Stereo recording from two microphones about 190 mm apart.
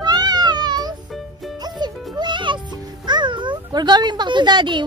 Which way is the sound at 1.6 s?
20° right (ahead or behind).